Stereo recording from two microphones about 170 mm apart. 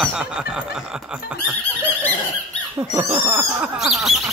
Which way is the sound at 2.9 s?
10° right (ahead or behind).